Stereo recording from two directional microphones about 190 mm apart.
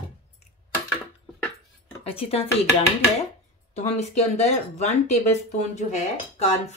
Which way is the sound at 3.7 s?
35° left (ahead or behind).